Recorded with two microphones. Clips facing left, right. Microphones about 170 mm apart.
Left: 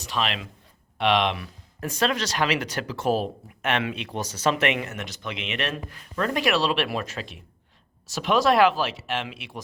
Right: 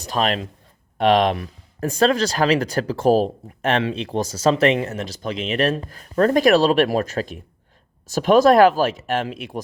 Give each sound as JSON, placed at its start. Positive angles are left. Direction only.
{"t": 0.1, "sound": "speech", "side_deg": -40}